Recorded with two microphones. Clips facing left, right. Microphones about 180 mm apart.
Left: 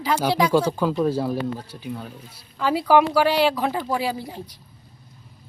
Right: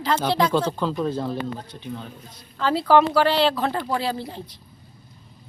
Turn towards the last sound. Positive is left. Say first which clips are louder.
# even
turn(degrees=10)  # may be behind; listen again after turning